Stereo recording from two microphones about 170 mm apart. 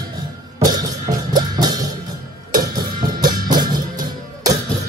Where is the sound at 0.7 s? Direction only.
20° right (ahead or behind).